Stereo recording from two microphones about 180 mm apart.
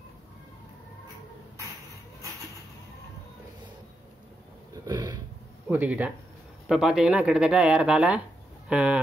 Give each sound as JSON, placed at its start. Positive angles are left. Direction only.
{"t": 4.8, "sound": "roaring cats", "side_deg": -25}
{"t": 5.7, "sound": "speech", "side_deg": -10}